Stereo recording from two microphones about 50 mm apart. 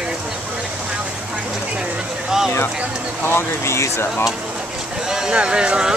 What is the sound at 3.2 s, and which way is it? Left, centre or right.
Speech, left.